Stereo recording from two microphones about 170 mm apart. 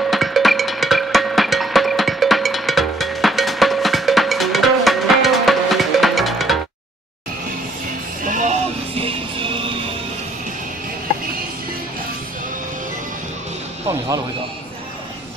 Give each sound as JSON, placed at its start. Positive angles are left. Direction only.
{"t": 0.0, "sound": "music", "side_deg": 0}
{"t": 8.2, "sound": "music", "side_deg": -50}